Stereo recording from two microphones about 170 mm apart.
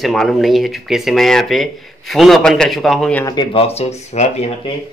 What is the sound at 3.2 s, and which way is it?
Speech, 25° left (ahead or behind).